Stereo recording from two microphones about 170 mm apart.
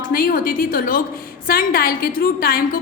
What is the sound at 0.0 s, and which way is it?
A woman's voice, 55° left (ahead or behind).